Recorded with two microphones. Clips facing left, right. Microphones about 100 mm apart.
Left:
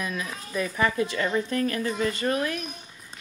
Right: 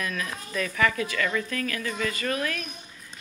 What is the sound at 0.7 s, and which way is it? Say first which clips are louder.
A woman's voice: even; 25° left (ahead or behind).